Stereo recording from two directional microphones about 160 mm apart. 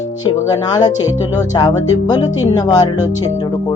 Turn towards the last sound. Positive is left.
turn(degrees=25)  # may be behind; listen again after turning